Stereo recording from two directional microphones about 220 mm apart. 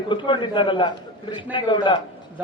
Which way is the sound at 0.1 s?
20° left (ahead or behind).